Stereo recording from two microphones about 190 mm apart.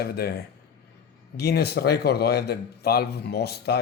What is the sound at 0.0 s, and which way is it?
A man's voice, 55° left (ahead or behind).